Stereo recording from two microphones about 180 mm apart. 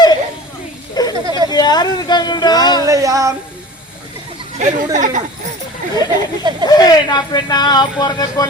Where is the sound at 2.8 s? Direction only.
20° right (ahead or behind).